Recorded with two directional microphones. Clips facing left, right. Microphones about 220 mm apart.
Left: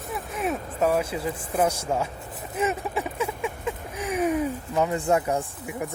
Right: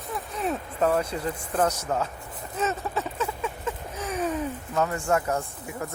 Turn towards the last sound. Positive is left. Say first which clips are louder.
# left 2 dB
turn(degrees=15)  # may be behind; listen again after turning